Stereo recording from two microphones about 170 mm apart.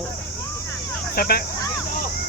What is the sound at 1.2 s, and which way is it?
Speech, 65° left (ahead or behind).